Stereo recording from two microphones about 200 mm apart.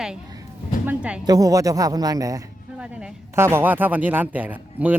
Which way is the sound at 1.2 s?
15° right (ahead or behind).